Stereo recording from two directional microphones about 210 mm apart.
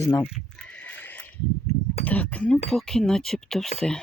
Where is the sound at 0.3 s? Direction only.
5° left (ahead or behind).